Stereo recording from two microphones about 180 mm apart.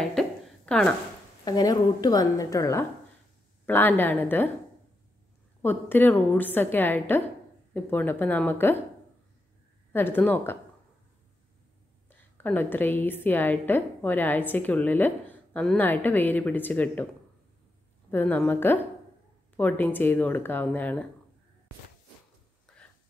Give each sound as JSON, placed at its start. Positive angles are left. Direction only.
{"t": 0.0, "sound": "a sound", "side_deg": 5}
{"t": 1.4, "sound": "a woman's voice", "side_deg": 20}
{"t": 5.6, "sound": "a woman's voice", "side_deg": 10}
{"t": 9.9, "sound": "a woman's voice", "side_deg": 10}
{"t": 12.1, "sound": "a woman's voice", "side_deg": 10}
{"t": 18.1, "sound": "a woman's voice", "side_deg": 10}